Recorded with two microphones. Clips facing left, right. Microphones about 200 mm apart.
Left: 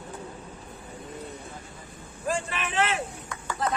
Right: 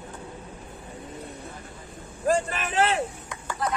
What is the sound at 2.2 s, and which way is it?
Vehicle, 40° right (ahead or behind).